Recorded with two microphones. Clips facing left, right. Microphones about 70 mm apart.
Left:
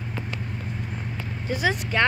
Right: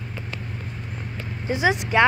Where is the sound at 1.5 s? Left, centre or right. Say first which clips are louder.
Right 3 dB; right.